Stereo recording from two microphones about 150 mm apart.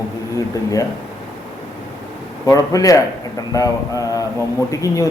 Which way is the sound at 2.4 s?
25° left (ahead or behind).